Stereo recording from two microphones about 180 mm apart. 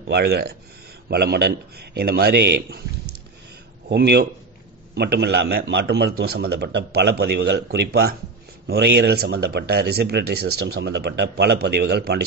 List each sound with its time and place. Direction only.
0.1 s speech: 60° right (ahead or behind)
3.9 s speech: 65° right (ahead or behind)